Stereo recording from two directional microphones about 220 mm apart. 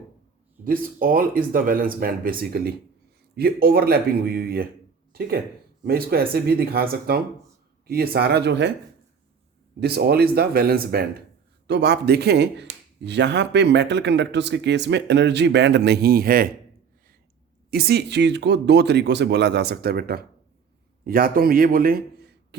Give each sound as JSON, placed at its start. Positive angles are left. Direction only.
{"t": 0.6, "sound": "a man's voice", "side_deg": -40}
{"t": 5.8, "sound": "a man's voice", "side_deg": -45}
{"t": 9.8, "sound": "a man's voice", "side_deg": -45}
{"t": 17.7, "sound": "a man's voice", "side_deg": -45}